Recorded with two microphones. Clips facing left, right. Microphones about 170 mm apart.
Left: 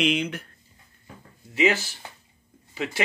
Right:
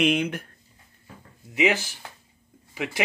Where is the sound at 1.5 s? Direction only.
15° right (ahead or behind).